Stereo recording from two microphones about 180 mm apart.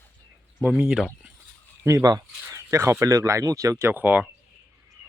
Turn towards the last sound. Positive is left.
turn(degrees=-10)  # may be behind; listen again after turning